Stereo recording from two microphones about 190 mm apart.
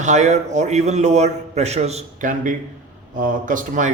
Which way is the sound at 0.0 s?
40° right (ahead or behind).